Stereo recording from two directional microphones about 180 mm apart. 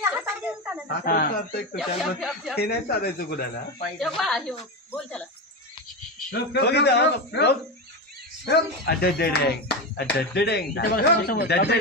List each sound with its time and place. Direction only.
0.0 s a sound: 10° right (ahead or behind)
0.8 s speech: 55° left (ahead or behind)
1.8 s speech: centre (ahead or behind)
2.5 s speech: 60° left (ahead or behind)
4.0 s speech: centre (ahead or behind)
6.5 s speech: 65° left (ahead or behind)